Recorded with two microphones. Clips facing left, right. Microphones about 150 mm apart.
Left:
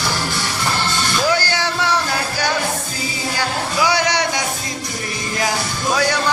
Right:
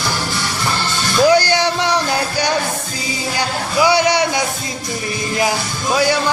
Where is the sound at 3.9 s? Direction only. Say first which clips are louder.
Right 4 dB; 10° right (ahead or behind).